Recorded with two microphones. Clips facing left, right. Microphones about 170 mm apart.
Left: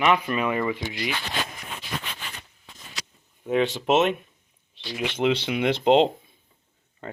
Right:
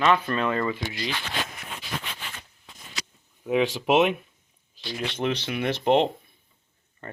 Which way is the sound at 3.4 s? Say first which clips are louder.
Even; 10° right (ahead or behind).